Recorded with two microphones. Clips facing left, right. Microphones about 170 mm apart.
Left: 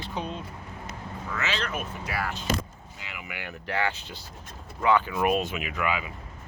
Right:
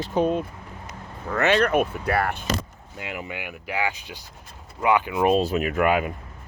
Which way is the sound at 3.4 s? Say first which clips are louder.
Even; 10° right (ahead or behind).